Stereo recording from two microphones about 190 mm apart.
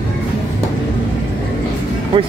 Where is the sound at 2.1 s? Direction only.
25° right (ahead or behind).